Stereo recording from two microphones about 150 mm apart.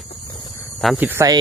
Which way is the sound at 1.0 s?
10° right (ahead or behind).